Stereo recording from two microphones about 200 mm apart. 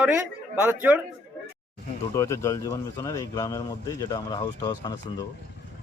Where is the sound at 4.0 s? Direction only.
20° left (ahead or behind).